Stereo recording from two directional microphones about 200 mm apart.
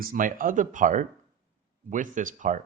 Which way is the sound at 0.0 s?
45° right (ahead or behind).